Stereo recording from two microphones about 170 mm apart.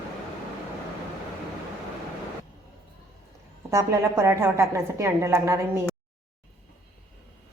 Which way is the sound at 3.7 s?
15° right (ahead or behind).